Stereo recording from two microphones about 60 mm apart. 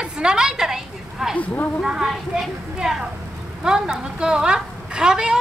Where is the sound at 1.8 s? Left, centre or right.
Centre.